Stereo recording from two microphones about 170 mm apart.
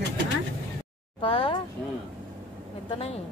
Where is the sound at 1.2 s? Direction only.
30° left (ahead or behind).